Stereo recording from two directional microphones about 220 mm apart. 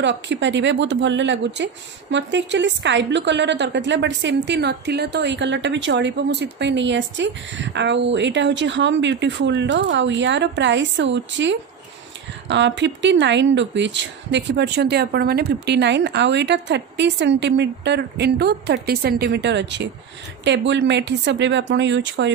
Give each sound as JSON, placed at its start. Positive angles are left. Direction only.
{"t": 0.0, "sound": "a woman's voice", "side_deg": -55}